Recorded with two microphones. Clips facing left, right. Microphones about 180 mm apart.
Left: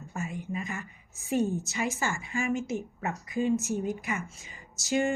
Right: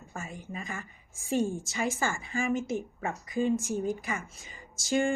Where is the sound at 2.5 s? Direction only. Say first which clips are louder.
Right 1 dB; 5° left (ahead or behind).